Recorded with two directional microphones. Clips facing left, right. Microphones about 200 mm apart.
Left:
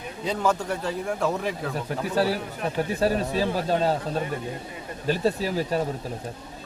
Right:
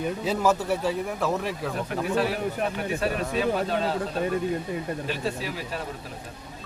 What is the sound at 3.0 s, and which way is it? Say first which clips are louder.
Speech: left 2 dB; 35° left (ahead or behind).